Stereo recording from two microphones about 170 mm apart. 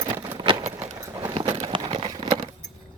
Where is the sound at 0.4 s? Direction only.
30° right (ahead or behind).